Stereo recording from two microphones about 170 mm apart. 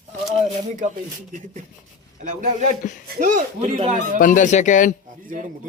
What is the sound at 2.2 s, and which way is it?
A man's voice, 45° right (ahead or behind).